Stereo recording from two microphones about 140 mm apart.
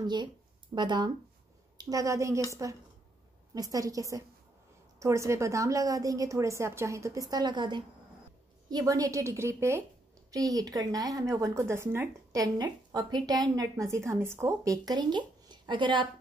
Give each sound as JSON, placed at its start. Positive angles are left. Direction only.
{"t": 0.0, "sound": "speech", "side_deg": -30}
{"t": 3.5, "sound": "speech", "side_deg": -25}